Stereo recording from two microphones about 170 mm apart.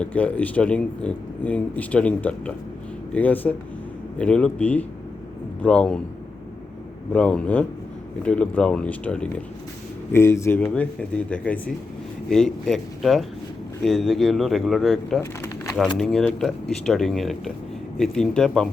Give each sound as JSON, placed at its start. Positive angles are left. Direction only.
{"t": 0.0, "sound": "speech", "side_deg": 10}
{"t": 7.1, "sound": "speech", "side_deg": 5}